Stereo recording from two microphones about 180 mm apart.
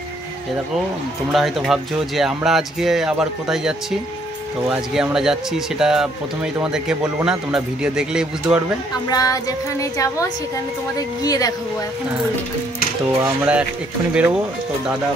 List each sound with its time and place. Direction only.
1.3 s speech: centre (ahead or behind)
8.9 s speech: 20° left (ahead or behind)
13.0 s speech: 10° right (ahead or behind)